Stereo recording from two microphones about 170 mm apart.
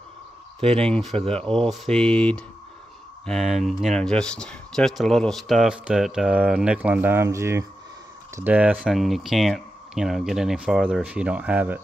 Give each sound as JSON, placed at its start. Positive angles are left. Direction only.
{"t": 0.6, "sound": "speech", "side_deg": -35}
{"t": 0.8, "sound": "speech", "side_deg": 5}